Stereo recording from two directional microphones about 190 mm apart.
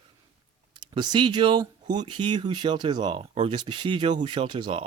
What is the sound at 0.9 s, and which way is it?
Speech, 25° right (ahead or behind).